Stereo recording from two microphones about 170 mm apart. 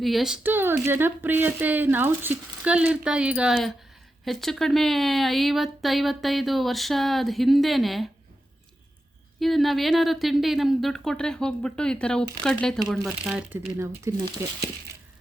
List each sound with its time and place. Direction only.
0.0 s speech: centre (ahead or behind)
9.4 s speech: centre (ahead or behind); by 14.3 s 15° right (ahead or behind)